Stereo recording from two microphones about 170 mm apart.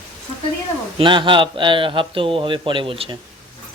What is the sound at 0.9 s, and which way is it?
A man's voice, 30° right (ahead or behind).